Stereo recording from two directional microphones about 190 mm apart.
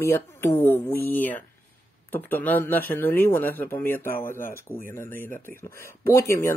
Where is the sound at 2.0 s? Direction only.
10° left (ahead or behind).